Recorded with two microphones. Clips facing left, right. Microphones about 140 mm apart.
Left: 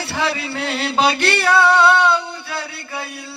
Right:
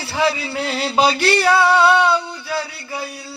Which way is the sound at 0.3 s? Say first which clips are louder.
Right 1 dB; 65° left (ahead or behind).